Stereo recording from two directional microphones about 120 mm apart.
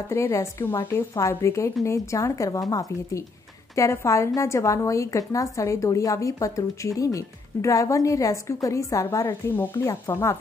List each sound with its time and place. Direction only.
0.1 s a woman's voice: 25° left (ahead or behind)